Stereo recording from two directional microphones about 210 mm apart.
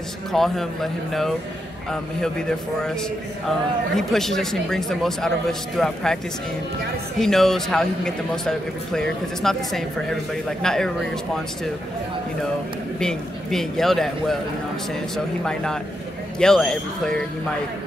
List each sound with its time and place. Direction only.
0.3 s a man's voice: centre (ahead or behind)
3.4 s a man's voice: centre (ahead or behind)
7.2 s a man's voice: centre (ahead or behind)
13.0 s a man's voice: centre (ahead or behind)